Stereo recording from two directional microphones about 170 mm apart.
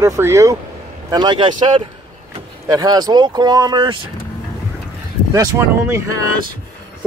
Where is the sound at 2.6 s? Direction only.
20° right (ahead or behind).